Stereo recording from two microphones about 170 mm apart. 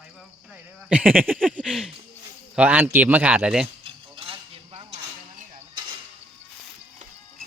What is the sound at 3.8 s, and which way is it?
Stir, 30° right (ahead or behind).